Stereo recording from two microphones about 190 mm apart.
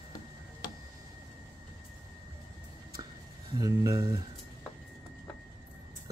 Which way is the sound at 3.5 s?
20° right (ahead or behind).